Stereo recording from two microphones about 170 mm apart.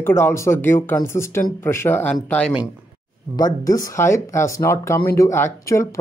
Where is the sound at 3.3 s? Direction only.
20° left (ahead or behind).